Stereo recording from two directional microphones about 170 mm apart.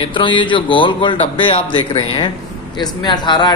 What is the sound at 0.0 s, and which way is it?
A man's voice, 30° left (ahead or behind).